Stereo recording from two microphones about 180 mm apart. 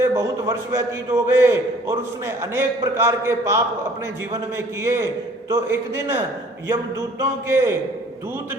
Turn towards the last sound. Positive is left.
turn(degrees=-15)  # may be behind; listen again after turning